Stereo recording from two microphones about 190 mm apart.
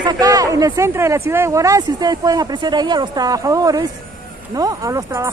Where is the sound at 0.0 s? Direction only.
20° right (ahead or behind).